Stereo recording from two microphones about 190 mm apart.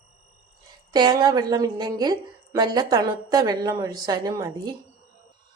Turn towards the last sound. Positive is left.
turn(degrees=-20)  # may be behind; listen again after turning